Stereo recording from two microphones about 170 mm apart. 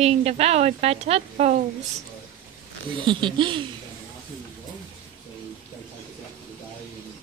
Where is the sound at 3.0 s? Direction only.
30° right (ahead or behind).